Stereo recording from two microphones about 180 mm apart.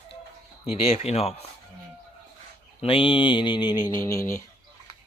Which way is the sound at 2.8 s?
30° left (ahead or behind).